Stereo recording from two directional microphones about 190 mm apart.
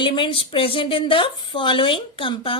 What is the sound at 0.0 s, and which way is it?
Speech, 25° left (ahead or behind).